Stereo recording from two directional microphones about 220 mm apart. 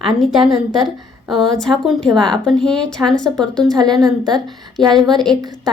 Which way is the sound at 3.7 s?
20° right (ahead or behind).